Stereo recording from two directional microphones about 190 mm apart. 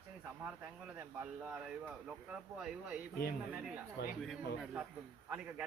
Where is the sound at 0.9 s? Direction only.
10° right (ahead or behind).